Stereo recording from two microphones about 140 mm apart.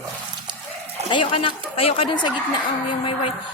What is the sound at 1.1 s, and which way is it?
Speech, 40° left (ahead or behind).